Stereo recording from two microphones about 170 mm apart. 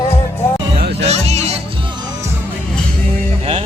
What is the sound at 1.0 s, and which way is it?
Music, 40° right (ahead or behind).